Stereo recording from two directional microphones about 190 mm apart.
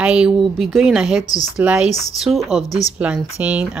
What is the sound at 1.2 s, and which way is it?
Speech, 20° left (ahead or behind).